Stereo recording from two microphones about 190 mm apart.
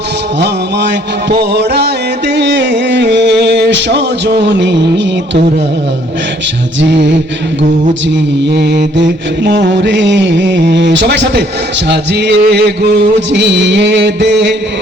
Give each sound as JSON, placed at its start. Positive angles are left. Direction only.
{"t": 0.3, "sound": "music", "side_deg": -65}
{"t": 6.8, "sound": "mantra", "side_deg": -65}
{"t": 8.4, "sound": "mantra", "side_deg": -60}